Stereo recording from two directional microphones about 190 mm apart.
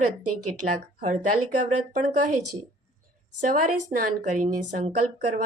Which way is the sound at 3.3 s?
45° right (ahead or behind).